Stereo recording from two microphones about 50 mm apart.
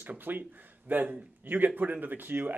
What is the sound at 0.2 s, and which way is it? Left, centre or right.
Speech, right.